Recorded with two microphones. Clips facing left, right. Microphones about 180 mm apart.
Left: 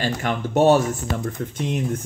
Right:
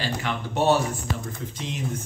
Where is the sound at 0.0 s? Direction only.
45° left (ahead or behind).